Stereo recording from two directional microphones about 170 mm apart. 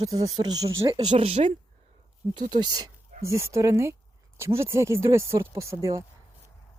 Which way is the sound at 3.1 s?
50° right (ahead or behind).